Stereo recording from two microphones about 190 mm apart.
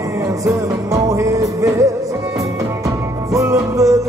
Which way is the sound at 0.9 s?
15° right (ahead or behind).